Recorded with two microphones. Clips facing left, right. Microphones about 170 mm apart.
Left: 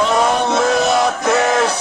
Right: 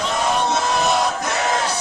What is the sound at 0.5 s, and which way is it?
Music, 65° left (ahead or behind).